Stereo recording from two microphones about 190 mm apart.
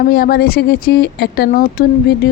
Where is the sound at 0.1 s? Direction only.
55° left (ahead or behind).